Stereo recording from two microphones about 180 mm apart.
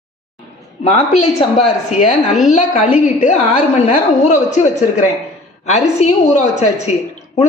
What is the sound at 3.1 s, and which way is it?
A woman's voice, 45° left (ahead or behind).